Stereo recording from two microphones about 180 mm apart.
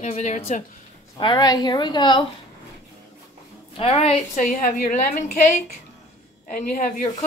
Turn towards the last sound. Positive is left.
turn(degrees=50)  # may be behind; listen again after turning